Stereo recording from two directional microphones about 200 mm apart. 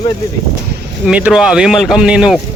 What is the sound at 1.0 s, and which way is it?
Speech, 5° right (ahead or behind).